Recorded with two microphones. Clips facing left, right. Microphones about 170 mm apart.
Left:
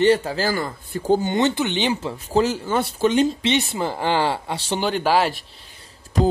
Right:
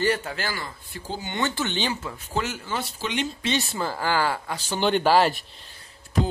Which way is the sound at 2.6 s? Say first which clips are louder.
Left 10 dB; 50° left (ahead or behind).